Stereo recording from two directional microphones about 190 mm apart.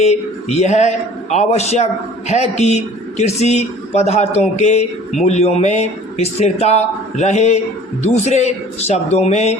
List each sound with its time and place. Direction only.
0.0 s a man's voice: 35° left (ahead or behind)